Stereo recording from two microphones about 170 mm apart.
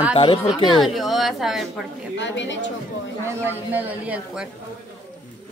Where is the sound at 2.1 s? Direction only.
90° left.